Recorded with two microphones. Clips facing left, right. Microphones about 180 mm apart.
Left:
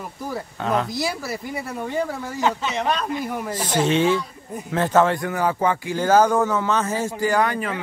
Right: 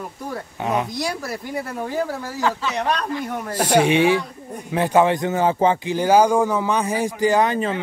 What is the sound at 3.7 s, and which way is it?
A man's voice, 15° right (ahead or behind).